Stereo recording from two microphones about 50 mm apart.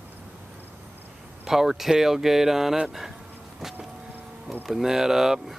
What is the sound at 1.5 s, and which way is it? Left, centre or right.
Speech, centre.